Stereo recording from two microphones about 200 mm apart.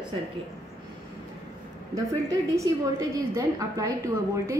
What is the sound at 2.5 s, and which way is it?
A woman's voice, 15° right (ahead or behind).